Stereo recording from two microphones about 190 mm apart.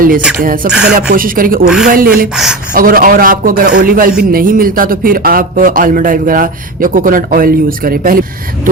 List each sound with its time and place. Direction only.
0.4 s speech: 45° right (ahead or behind)
0.7 s speech: 5° right (ahead or behind)
1.1 s speech: 50° right (ahead or behind)
1.6 s speech: 5° right (ahead or behind)
1.9 s speech: 50° right (ahead or behind)
2.3 s speech: 5° right (ahead or behind)
2.7 s speech: 50° right (ahead or behind)